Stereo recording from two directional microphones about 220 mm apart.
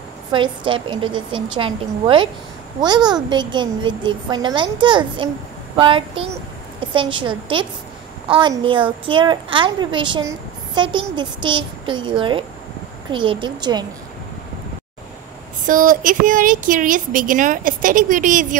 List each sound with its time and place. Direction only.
0.3 s a woman's voice: 20° right (ahead or behind)
15.6 s speech: 40° right (ahead or behind)